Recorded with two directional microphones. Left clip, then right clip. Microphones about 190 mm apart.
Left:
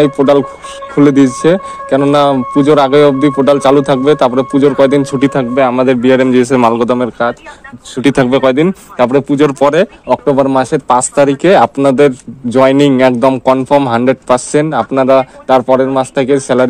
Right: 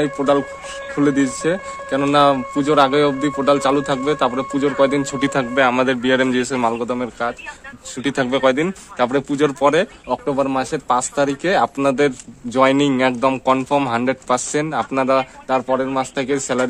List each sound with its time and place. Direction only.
0.0 s speech: 30° left (ahead or behind)
15.4 s speech: 35° left (ahead or behind)